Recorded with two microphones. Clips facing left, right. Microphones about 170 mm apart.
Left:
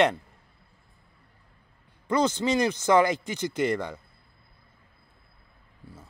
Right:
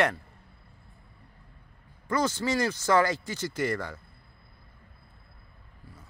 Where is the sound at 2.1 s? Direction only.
20° left (ahead or behind).